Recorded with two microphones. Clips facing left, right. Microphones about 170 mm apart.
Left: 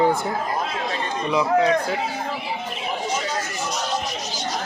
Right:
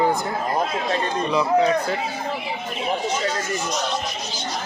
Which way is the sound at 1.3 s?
10° left (ahead or behind).